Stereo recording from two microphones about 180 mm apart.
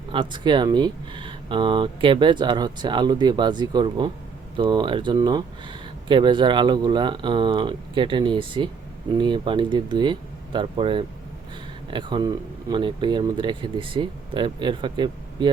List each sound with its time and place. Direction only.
0.1 s speech: 25° right (ahead or behind)